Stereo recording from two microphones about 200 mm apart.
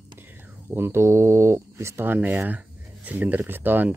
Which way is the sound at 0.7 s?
10° right (ahead or behind).